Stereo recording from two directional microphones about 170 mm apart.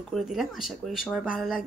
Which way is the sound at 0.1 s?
Centre (ahead or behind).